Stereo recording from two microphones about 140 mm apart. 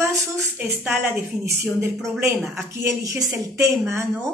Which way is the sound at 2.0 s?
Centre (ahead or behind).